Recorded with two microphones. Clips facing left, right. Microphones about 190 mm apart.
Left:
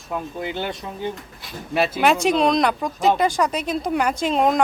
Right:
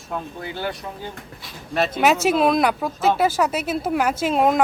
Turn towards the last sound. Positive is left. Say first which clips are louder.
# right 1 dB
turn(degrees=-5)  # may be behind; listen again after turning